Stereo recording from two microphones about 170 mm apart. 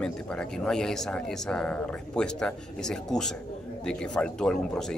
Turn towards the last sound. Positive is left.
turn(degrees=5)  # may be behind; listen again after turning